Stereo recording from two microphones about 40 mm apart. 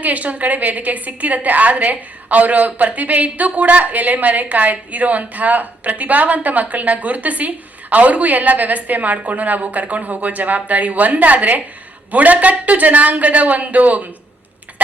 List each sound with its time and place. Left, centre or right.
0.0 s a woman's voice: right